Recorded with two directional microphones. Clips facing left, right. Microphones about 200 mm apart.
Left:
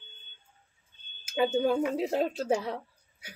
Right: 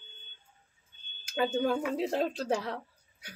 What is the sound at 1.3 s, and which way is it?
Speech, 10° left (ahead or behind).